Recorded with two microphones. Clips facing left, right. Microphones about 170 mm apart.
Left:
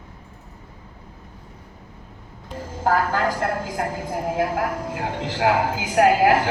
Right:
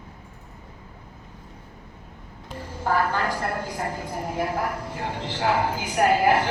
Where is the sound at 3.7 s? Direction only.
90° left.